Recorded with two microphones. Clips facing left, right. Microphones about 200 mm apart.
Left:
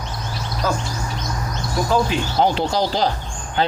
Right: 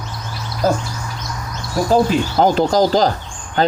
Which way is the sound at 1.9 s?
40° right (ahead or behind).